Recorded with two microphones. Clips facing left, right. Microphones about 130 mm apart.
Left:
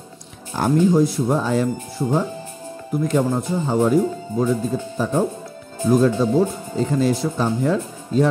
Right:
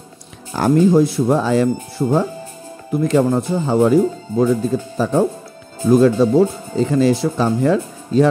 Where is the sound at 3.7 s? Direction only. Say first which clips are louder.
Right 4 dB; 75° right (ahead or behind).